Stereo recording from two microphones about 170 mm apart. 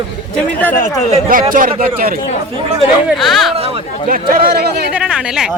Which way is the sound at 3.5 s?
35° right (ahead or behind).